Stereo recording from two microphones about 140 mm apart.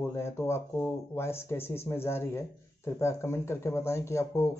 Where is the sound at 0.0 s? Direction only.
20° left (ahead or behind).